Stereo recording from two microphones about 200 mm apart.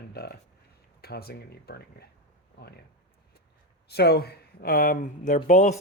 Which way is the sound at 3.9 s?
55° left (ahead or behind).